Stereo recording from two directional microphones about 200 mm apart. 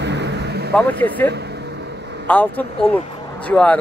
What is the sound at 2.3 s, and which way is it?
Speech, 10° left (ahead or behind).